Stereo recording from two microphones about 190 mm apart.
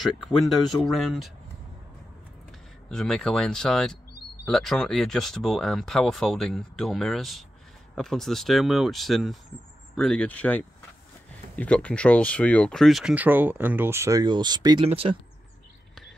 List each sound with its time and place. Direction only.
0.9 s speech: centre (ahead or behind)
2.9 s speech: 5° left (ahead or behind); by 15.1 s 30° right (ahead or behind)